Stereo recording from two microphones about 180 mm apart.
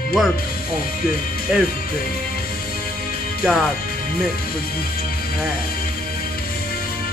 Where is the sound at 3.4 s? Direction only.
Centre (ahead or behind).